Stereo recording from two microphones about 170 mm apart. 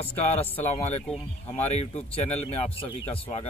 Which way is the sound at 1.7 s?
40° left (ahead or behind).